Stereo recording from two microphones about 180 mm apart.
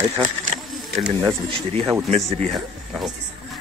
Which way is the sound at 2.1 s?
35° right (ahead or behind).